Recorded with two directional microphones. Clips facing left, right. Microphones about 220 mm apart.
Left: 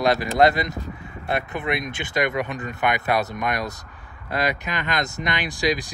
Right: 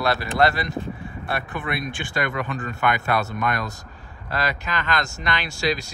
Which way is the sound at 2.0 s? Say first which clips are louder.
Left 4 dB; 20° left (ahead or behind).